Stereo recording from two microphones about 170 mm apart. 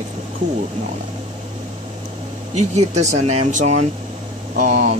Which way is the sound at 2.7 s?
40° right (ahead or behind).